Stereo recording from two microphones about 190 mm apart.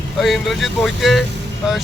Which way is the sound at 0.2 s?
Centre (ahead or behind).